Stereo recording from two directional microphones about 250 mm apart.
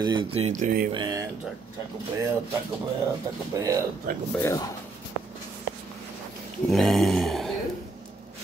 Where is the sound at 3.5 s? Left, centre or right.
Centre.